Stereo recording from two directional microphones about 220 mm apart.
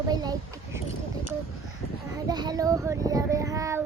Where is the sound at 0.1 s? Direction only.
15° right (ahead or behind).